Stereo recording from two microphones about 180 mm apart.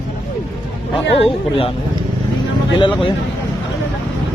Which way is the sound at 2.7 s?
25° left (ahead or behind).